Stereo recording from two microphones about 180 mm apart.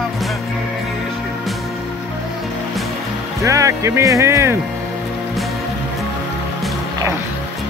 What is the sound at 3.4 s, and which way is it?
Speech, 15° right (ahead or behind).